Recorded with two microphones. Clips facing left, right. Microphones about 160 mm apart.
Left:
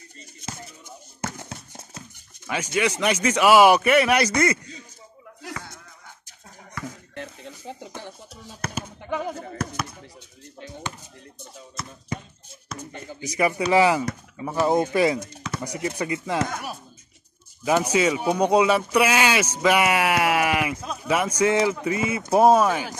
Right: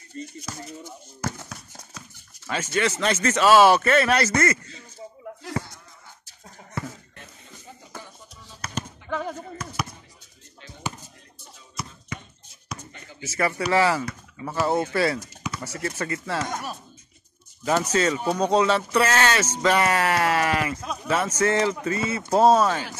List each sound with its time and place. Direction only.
1.2 s horse: 20° left (ahead or behind)
2.5 s speech: 15° left (ahead or behind)
7.2 s music: 70° left (ahead or behind)
8.7 s speech: 10° left (ahead or behind)
13.2 s speech: 15° left (ahead or behind)
20.8 s speech: centre (ahead or behind)
21.1 s speech: 10° left (ahead or behind)